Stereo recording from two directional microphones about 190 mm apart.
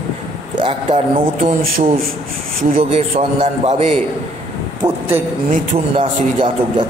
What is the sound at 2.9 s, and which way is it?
A man's voice, 35° right (ahead or behind).